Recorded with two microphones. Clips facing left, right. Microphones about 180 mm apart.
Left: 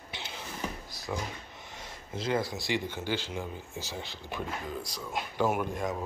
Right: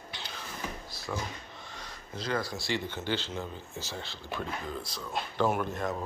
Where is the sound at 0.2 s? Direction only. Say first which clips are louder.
Left 3 dB; 20° left (ahead or behind).